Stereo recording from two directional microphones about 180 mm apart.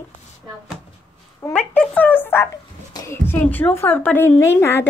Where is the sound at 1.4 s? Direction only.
10° left (ahead or behind).